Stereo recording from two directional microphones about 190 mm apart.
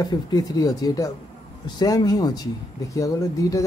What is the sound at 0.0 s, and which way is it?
Speech, 20° left (ahead or behind).